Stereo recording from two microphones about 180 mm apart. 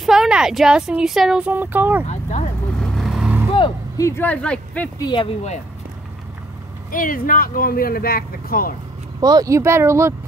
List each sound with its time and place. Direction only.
0.0 s speech: centre (ahead or behind)
2.8 s vehicle: centre (ahead or behind)
3.5 s music: 25° left (ahead or behind)
4.1 s speech: 10° left (ahead or behind)
4.9 s speech: 25° left (ahead or behind)
6.9 s speech: 50° left (ahead or behind)
9.2 s speech: 20° right (ahead or behind)